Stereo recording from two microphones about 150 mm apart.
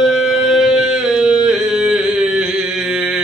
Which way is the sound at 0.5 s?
5° right (ahead or behind).